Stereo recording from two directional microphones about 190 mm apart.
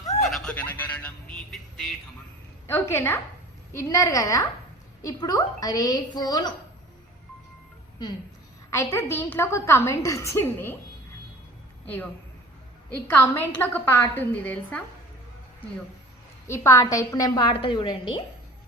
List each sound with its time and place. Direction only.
0.3 s a sound: 5° left (ahead or behind)
2.6 s a woman's voice: 15° left (ahead or behind)
8.7 s a woman's voice: 15° left (ahead or behind)
12.9 s a woman's voice: 10° left (ahead or behind)
16.5 s a woman's voice: 15° left (ahead or behind)